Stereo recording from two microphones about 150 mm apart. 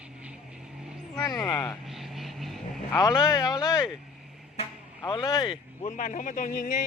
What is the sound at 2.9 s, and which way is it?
Speech, 25° left (ahead or behind).